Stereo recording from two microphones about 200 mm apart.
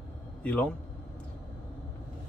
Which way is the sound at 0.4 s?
5° left (ahead or behind).